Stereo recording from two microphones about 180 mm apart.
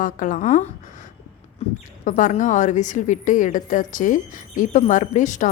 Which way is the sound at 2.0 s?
45° left (ahead or behind).